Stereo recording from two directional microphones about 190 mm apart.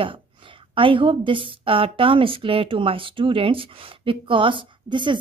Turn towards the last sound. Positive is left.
turn(degrees=-25)  # may be behind; listen again after turning